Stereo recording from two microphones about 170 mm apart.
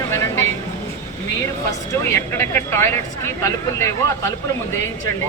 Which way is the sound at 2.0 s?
15° left (ahead or behind).